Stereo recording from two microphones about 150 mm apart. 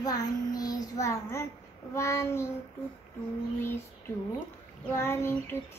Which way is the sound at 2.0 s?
15° left (ahead or behind).